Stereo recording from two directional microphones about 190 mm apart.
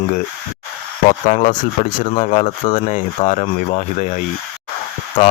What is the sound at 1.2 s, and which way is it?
Speech, 35° left (ahead or behind).